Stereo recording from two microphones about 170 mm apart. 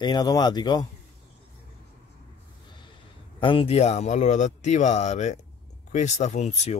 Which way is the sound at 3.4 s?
30° left (ahead or behind).